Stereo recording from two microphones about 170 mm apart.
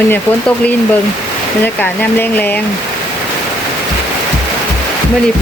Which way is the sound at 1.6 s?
10° left (ahead or behind).